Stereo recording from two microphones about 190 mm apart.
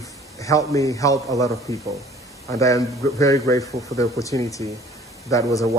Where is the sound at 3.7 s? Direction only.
15° right (ahead or behind).